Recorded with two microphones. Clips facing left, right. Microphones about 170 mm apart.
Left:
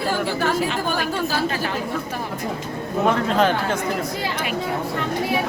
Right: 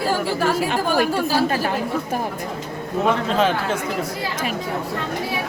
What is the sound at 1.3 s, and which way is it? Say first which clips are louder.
Speech: right 4 dB; 35° right (ahead or behind).